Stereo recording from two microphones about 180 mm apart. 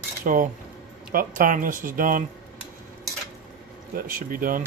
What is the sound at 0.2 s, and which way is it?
Speech, 50° right (ahead or behind).